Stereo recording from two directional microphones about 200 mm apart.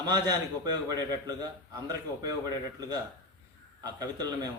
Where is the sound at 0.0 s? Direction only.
20° right (ahead or behind).